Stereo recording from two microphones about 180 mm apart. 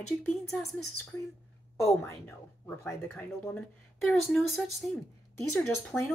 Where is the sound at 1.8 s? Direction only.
15° left (ahead or behind).